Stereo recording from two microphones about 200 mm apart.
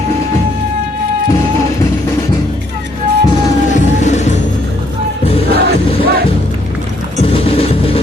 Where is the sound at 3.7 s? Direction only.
35° left (ahead or behind).